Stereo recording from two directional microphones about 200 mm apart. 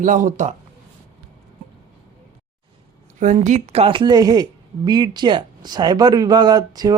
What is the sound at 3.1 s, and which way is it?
Speech, 35° right (ahead or behind).